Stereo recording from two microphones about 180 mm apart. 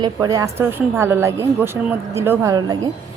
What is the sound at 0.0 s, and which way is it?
Speech, 20° right (ahead or behind).